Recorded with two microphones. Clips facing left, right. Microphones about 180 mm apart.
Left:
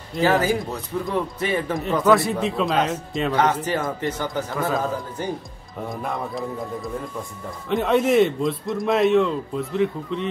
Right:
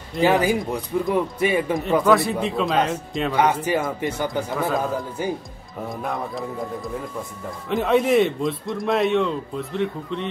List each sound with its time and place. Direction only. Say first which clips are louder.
0.2 s speech: right 1 dB; 15° right (ahead or behind)
1.8 s a man's voice: left 1 dB; centre (ahead or behind)
3.3 s speech: right 2 dB; 10° right (ahead or behind)
4.6 s a man's voice: even; centre (ahead or behind)